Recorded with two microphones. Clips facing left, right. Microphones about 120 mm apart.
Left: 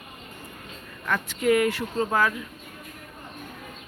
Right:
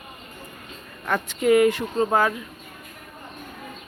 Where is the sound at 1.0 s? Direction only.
25° right (ahead or behind).